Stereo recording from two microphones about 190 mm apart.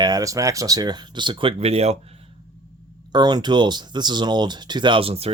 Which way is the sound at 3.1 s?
20° right (ahead or behind).